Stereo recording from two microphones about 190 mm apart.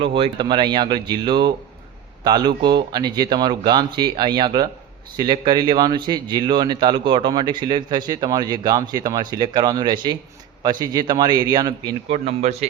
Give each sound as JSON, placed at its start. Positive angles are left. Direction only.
{"t": 0.0, "sound": "a man's voice", "side_deg": -25}
{"t": 12.1, "sound": "a man's voice", "side_deg": -35}